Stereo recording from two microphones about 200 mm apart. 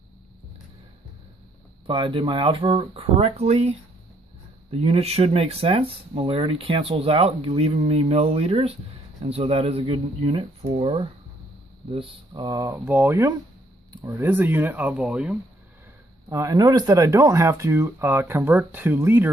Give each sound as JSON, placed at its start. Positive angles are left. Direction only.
{"t": 1.9, "sound": "speech", "side_deg": -25}
{"t": 16.3, "sound": "speech", "side_deg": -15}